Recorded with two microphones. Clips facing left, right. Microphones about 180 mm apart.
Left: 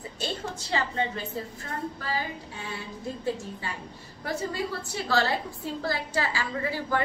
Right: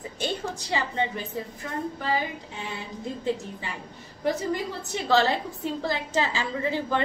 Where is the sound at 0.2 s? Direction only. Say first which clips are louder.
Right 3 dB; 15° right (ahead or behind).